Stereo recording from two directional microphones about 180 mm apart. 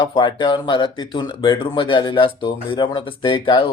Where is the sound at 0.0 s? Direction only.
25° left (ahead or behind).